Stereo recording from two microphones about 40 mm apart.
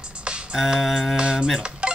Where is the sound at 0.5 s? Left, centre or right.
Centre.